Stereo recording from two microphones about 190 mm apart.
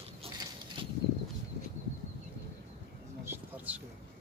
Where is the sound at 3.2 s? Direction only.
10° right (ahead or behind).